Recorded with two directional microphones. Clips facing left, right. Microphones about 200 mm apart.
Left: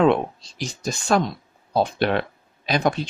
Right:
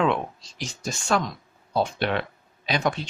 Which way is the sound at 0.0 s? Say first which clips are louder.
Left 6 dB; 35° left (ahead or behind).